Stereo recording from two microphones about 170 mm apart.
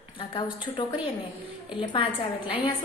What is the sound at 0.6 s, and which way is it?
A woman's voice, 25° left (ahead or behind).